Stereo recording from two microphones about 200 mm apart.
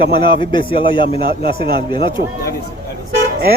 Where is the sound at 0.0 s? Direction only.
25° left (ahead or behind).